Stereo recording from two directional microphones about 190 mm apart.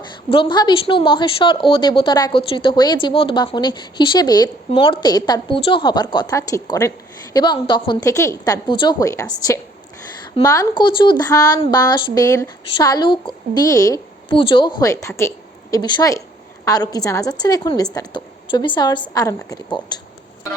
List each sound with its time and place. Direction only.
0.3 s a woman's voice: 25° left (ahead or behind)